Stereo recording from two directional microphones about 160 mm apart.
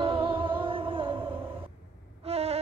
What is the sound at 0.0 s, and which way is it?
Music, 30° right (ahead or behind).